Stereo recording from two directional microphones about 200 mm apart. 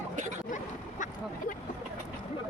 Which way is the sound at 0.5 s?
40° left (ahead or behind).